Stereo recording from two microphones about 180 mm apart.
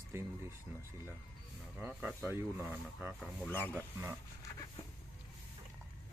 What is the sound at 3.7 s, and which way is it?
Speech, 10° right (ahead or behind).